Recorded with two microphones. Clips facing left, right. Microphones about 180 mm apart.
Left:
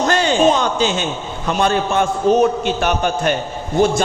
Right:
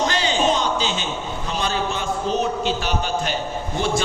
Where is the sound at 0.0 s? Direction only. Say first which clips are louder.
Left 6 dB; 50° left (ahead or behind).